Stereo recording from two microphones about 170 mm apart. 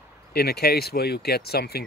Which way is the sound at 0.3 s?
70° left (ahead or behind).